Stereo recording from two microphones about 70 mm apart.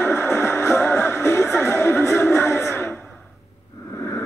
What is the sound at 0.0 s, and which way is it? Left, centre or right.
Music, left.